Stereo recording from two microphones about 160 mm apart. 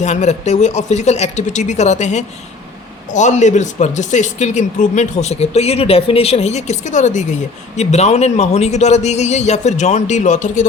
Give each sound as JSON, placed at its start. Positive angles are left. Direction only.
{"t": 0.0, "sound": "speech", "side_deg": 45}